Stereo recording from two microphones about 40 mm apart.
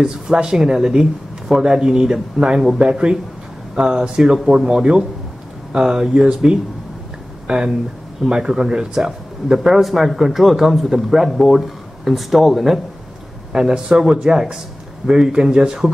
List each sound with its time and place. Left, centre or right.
0.0 s speech: centre
9.6 s speech: centre
13.5 s speech: centre